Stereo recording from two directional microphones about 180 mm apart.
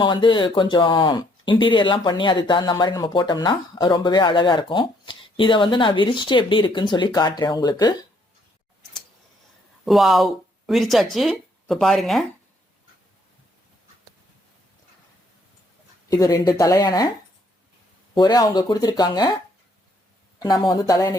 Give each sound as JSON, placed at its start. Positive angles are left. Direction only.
{"t": 0.0, "sound": "speech", "side_deg": 25}
{"t": 9.8, "sound": "speech", "side_deg": 0}
{"t": 16.0, "sound": "speech", "side_deg": 20}
{"t": 18.1, "sound": "speech", "side_deg": 25}
{"t": 20.4, "sound": "speech", "side_deg": 25}